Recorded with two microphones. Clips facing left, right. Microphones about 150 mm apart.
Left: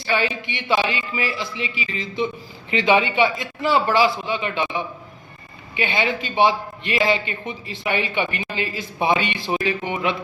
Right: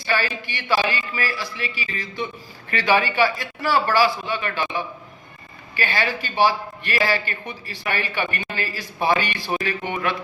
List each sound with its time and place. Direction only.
0.1 s a man's voice: 20° left (ahead or behind)